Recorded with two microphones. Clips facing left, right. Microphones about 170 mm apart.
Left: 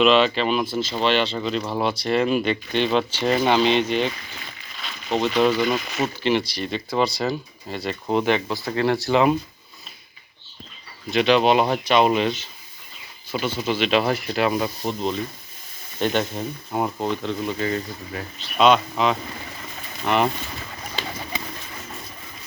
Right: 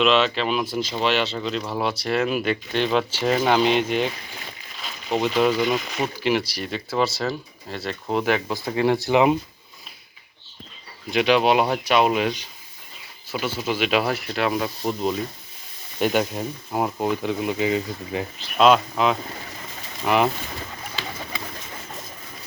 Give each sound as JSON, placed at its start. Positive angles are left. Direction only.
{"t": 0.0, "sound": "speech", "side_deg": 0}
{"t": 8.7, "sound": "speech", "side_deg": -15}
{"t": 11.1, "sound": "speech", "side_deg": -10}
{"t": 18.5, "sound": "speech", "side_deg": 0}